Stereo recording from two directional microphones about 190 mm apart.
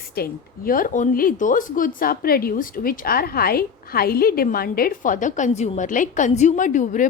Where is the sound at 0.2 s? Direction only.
50° left (ahead or behind).